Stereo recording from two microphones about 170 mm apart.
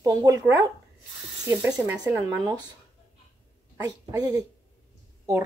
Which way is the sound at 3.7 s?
20° right (ahead or behind).